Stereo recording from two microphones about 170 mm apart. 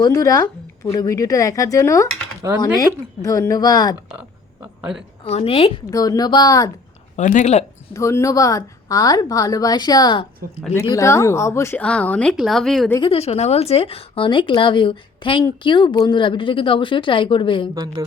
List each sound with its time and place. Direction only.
0.0 s speech: 20° left (ahead or behind)
4.6 s a sound: 5° right (ahead or behind)
5.2 s a woman's voice: 35° left (ahead or behind)
5.9 s speech: 20° left (ahead or behind)
7.2 s speech: 45° left (ahead or behind)
7.9 s speech: 20° left (ahead or behind)
10.8 s speech: 20° left (ahead or behind); by 12.9 s centre (ahead or behind)
13.0 s speech: 35° left (ahead or behind)